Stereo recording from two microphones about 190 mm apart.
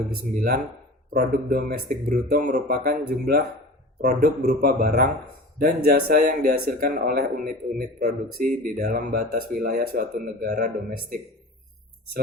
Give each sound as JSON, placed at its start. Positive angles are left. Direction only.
{"t": 0.1, "sound": "speech", "side_deg": -50}